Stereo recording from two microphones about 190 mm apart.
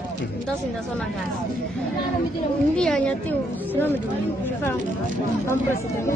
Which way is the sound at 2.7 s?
5° left (ahead or behind).